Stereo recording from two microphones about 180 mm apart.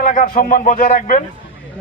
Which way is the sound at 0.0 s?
50° left (ahead or behind).